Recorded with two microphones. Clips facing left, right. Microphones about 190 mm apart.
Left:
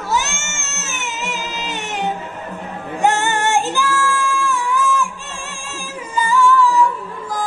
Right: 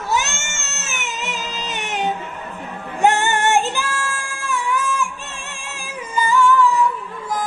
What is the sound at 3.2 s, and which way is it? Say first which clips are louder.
Female singing: even; 15° right (ahead or behind).